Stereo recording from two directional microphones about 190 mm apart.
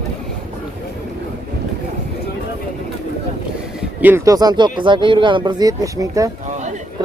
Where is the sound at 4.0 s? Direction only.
10° right (ahead or behind).